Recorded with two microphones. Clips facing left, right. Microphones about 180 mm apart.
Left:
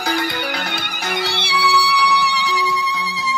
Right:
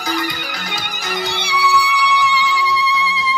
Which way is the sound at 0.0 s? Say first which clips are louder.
Left 1 dB; 65° left (ahead or behind).